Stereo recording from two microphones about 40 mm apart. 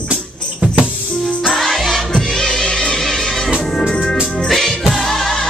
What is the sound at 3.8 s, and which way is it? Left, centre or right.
Organ, centre.